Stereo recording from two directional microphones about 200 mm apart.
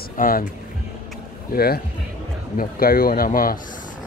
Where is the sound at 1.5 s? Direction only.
50° left (ahead or behind).